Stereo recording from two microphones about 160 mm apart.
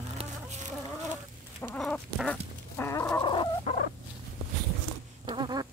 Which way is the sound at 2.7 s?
15° left (ahead or behind).